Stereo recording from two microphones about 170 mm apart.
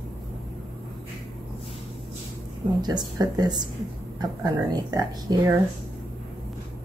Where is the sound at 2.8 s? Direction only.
25° right (ahead or behind).